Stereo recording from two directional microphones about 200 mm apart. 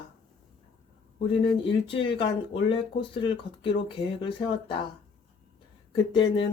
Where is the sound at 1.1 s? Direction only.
25° left (ahead or behind).